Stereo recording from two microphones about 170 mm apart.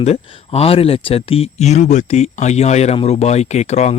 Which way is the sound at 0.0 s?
40° left (ahead or behind).